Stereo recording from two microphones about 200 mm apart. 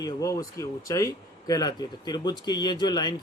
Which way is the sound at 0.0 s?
15° left (ahead or behind).